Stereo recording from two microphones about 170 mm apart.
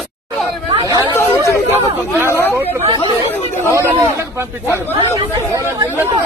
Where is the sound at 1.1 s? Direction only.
15° left (ahead or behind).